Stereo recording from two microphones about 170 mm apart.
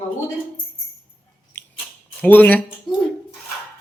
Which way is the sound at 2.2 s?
10° left (ahead or behind).